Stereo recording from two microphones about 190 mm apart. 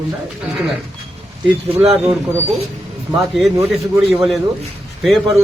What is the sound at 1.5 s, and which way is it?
Speech, centre (ahead or behind).